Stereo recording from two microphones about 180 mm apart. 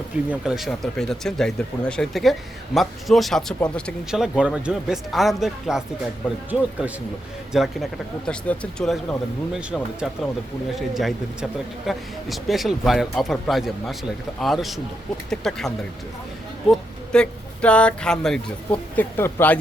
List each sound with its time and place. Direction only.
0.3 s speech: centre (ahead or behind)